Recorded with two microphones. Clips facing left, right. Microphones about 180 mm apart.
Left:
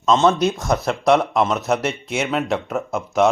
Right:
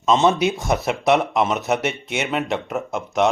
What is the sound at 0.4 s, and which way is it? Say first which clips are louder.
Speech: left 1 dB; centre (ahead or behind).